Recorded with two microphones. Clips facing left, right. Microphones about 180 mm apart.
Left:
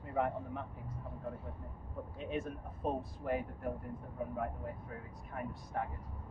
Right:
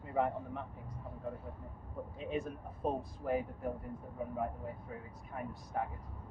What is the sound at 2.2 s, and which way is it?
Speech, centre (ahead or behind).